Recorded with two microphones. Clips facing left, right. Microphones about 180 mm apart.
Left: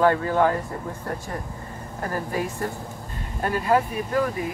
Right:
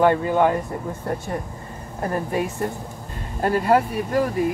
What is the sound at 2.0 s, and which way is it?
Speech, 25° right (ahead or behind).